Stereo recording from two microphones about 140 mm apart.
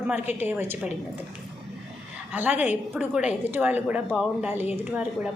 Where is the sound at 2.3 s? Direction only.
10° right (ahead or behind).